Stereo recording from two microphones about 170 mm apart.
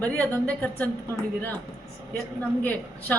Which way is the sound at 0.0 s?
10° left (ahead or behind).